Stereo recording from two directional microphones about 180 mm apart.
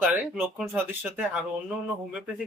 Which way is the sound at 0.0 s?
5° right (ahead or behind).